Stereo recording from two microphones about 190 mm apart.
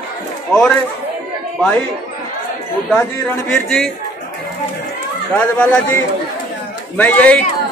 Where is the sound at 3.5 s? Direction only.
5° left (ahead or behind).